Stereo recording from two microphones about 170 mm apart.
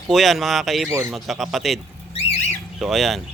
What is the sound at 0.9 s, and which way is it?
Speech, 15° right (ahead or behind).